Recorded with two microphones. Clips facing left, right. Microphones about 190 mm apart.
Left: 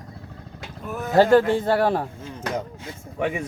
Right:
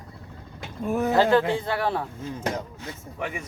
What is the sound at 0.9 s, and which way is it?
Speech, 35° right (ahead or behind).